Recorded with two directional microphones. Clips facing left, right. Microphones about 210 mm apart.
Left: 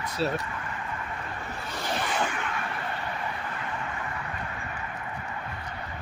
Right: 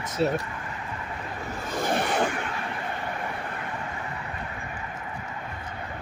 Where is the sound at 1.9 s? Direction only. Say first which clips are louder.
Right 4 dB; 55° right (ahead or behind).